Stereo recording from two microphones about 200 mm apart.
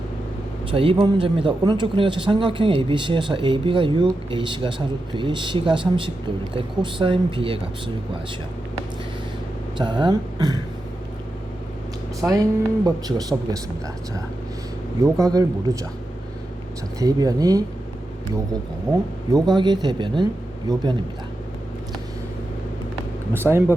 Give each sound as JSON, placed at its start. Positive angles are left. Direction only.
{"t": 0.7, "sound": "speech", "side_deg": -25}
{"t": 9.7, "sound": "speech", "side_deg": -25}
{"t": 12.2, "sound": "a man's voice", "side_deg": -10}
{"t": 12.8, "sound": "speech", "side_deg": -20}
{"t": 15.0, "sound": "a man's voice", "side_deg": -15}
{"t": 17.0, "sound": "a man's voice", "side_deg": -20}
{"t": 19.3, "sound": "a man's voice", "side_deg": -20}
{"t": 23.3, "sound": "a man's voice", "side_deg": -10}